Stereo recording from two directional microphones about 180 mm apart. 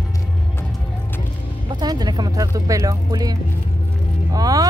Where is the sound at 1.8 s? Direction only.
20° right (ahead or behind).